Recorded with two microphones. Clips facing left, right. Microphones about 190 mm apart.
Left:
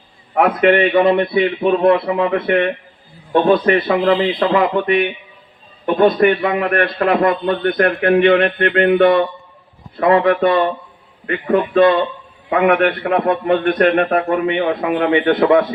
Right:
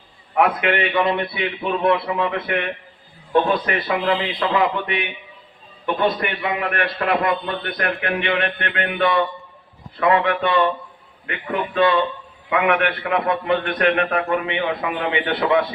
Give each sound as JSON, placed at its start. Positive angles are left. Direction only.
{"t": 0.3, "sound": "a man's voice", "side_deg": 45}